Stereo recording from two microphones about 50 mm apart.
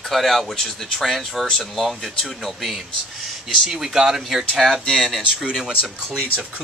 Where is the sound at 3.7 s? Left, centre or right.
Centre.